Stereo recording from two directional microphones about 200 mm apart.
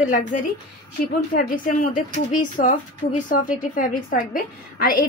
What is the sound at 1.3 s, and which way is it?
A woman's voice, 45° left (ahead or behind).